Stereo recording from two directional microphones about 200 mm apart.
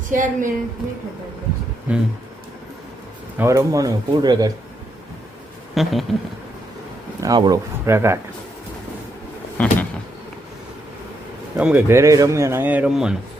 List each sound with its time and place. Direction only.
0.1 s a woman's voice: 40° right (ahead or behind)
1.9 s speech: 5° right (ahead or behind)
3.3 s speech: 15° right (ahead or behind)
5.7 s speech: centre (ahead or behind)
7.2 s speech: 20° right (ahead or behind)
9.6 s a sound: 5° left (ahead or behind)
11.5 s speech: 10° right (ahead or behind)